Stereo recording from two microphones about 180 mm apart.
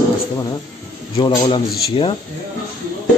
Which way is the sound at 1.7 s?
60° left (ahead or behind).